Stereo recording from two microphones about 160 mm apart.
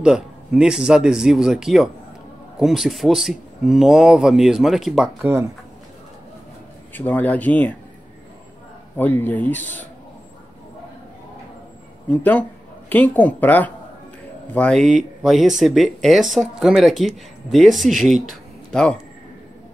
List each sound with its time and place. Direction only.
0.0 s speech: 5° right (ahead or behind)
5.2 s speech: 15° right (ahead or behind)
6.9 s speech: 10° left (ahead or behind)
8.9 s speech: 10° left (ahead or behind)
12.1 s speech: 10° left (ahead or behind)